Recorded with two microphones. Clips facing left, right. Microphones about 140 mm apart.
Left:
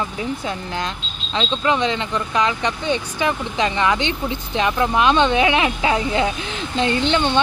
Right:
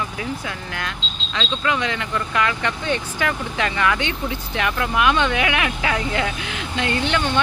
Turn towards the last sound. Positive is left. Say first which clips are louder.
# left 3 dB
turn(degrees=25)  # may be behind; listen again after turning